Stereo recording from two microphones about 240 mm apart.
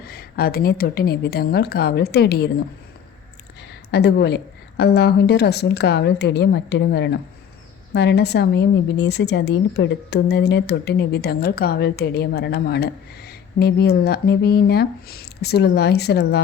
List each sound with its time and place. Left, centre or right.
0.1 s a woman's voice: left
3.9 s a woman's voice: left